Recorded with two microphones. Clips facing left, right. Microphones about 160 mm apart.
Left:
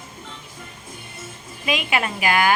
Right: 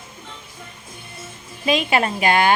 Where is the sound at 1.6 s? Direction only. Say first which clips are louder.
Right 4 dB; 35° right (ahead or behind).